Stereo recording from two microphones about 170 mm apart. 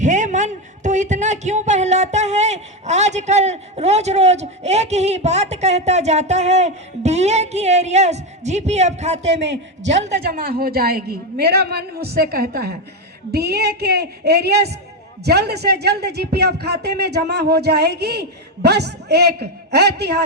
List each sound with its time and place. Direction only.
0.0 s a man's voice: 45° right (ahead or behind)
10.2 s a man's voice: 60° right (ahead or behind)